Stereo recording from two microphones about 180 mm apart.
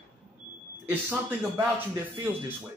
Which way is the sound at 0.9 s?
15° right (ahead or behind).